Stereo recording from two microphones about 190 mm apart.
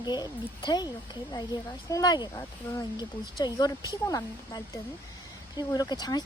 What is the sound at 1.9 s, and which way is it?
Speech, 20° left (ahead or behind).